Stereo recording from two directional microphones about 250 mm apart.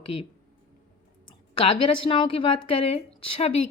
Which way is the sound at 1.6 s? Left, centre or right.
Centre.